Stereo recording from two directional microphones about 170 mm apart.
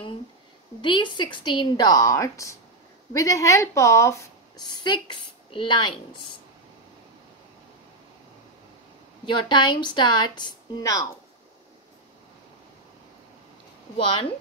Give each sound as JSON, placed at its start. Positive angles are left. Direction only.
{"t": 0.7, "sound": "a woman's voice", "side_deg": 30}
{"t": 9.2, "sound": "a woman's voice", "side_deg": 25}